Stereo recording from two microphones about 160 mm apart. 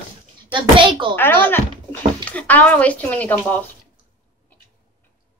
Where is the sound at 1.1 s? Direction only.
10° left (ahead or behind).